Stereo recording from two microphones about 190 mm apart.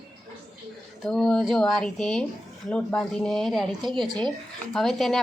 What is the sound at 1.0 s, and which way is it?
Speech, centre (ahead or behind).